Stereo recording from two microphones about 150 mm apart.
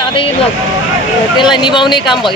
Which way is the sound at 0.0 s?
35° left (ahead or behind).